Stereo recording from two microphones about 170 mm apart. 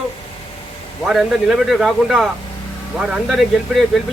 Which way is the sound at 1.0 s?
Centre (ahead or behind).